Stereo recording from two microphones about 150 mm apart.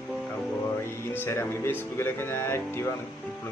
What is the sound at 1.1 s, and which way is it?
Speech, 15° left (ahead or behind).